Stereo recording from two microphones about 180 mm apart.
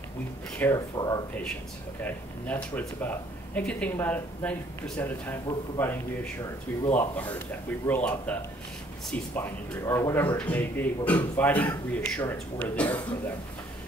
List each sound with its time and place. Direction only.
0.6 s speech: 15° left (ahead or behind)
2.0 s speech: 10° left (ahead or behind)